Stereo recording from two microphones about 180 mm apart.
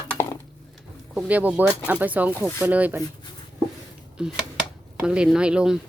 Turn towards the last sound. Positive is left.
turn(degrees=-5)  # may be behind; listen again after turning